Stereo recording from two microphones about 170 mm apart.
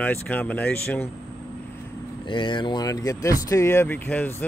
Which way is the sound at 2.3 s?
30° left (ahead or behind).